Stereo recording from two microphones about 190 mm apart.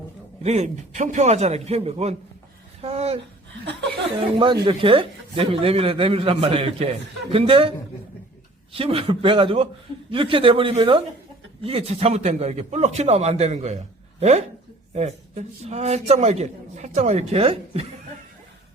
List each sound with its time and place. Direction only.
0.4 s a man's voice: 35° right (ahead or behind)
2.8 s a sound: 30° right (ahead or behind)
4.6 s speech: 25° right (ahead or behind)
8.7 s a man's voice: 30° right (ahead or behind)